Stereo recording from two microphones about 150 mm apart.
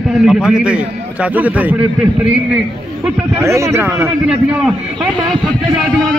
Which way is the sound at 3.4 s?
20° right (ahead or behind).